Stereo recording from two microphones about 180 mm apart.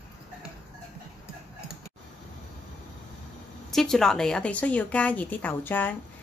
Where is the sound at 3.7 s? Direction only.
Centre (ahead or behind).